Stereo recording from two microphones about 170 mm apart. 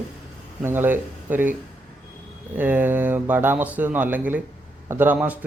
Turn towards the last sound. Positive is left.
turn(degrees=-10)  # may be behind; listen again after turning